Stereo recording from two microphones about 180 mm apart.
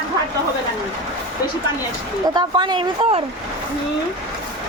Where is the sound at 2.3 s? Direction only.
25° right (ahead or behind).